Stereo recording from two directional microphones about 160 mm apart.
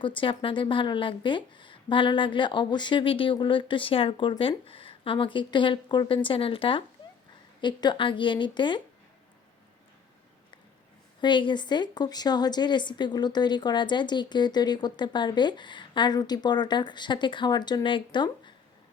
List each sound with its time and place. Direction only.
0.0 s a woman's voice: 30° left (ahead or behind)
11.2 s a woman's voice: 30° left (ahead or behind)